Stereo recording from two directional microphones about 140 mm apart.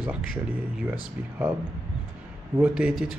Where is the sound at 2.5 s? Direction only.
10° right (ahead or behind).